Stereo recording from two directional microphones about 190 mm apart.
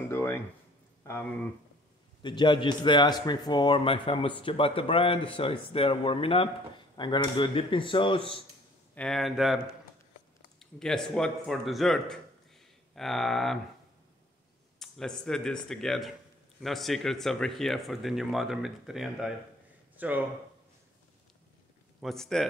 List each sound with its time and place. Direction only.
0.1 s a sound: 15° left (ahead or behind)
1.0 s speech: 10° left (ahead or behind)
2.2 s speech: 25° left (ahead or behind)
8.9 s speech: 5° left (ahead or behind)
10.6 s speech: centre (ahead or behind)
14.8 s speech: 5° left (ahead or behind)
22.0 s speech: centre (ahead or behind)